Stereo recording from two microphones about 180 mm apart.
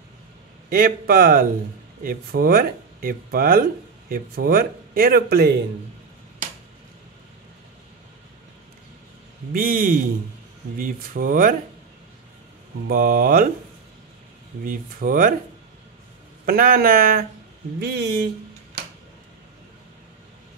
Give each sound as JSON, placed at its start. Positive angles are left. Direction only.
{"t": 0.7, "sound": "a man's voice", "side_deg": -55}
{"t": 9.5, "sound": "a man's voice", "side_deg": -50}
{"t": 12.8, "sound": "a man's voice", "side_deg": -50}
{"t": 14.6, "sound": "a man's voice", "side_deg": -50}
{"t": 16.4, "sound": "a man's voice", "side_deg": -50}
{"t": 17.7, "sound": "speech", "side_deg": -60}